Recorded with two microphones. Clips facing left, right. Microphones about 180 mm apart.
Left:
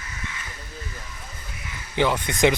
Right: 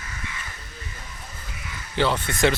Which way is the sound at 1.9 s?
15° left (ahead or behind).